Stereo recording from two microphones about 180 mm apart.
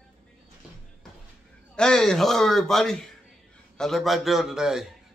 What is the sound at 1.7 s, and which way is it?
A man's voice, 5° left (ahead or behind).